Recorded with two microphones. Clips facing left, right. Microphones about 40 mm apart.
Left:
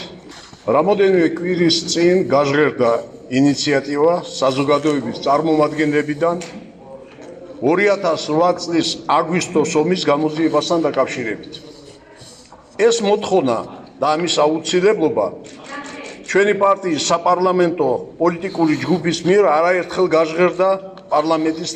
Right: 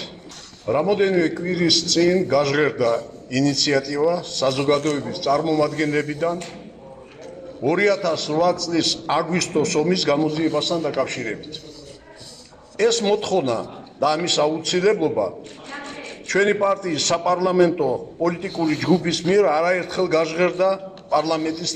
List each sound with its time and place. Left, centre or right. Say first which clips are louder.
0.7 s a man's voice: left 5 dB; left
7.6 s a man's voice: left 4 dB; left
10.8 s a man's voice: left 6 dB; left
12.7 s a man's voice: left 4 dB; left
15.0 s a man's voice: left 4 dB; left
15.7 s a sound: left 3 dB; left
16.3 s a man's voice: left 4 dB; left
18.6 s a man's voice: left 2 dB; left
19.3 s a man's voice: left 4 dB; left